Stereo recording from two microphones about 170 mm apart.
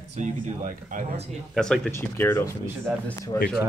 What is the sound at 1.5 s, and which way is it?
Speech, 5° left (ahead or behind).